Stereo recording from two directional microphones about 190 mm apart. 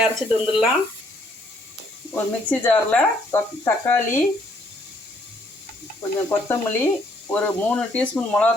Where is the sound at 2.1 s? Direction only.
10° left (ahead or behind).